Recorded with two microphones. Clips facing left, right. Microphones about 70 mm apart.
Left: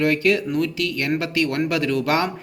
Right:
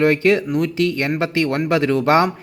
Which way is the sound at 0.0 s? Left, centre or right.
Right.